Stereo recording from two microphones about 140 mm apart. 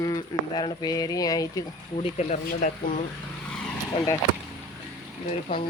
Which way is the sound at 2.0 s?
55° left (ahead or behind).